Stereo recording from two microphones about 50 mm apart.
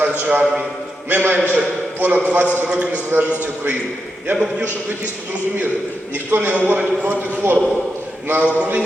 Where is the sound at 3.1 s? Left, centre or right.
Right.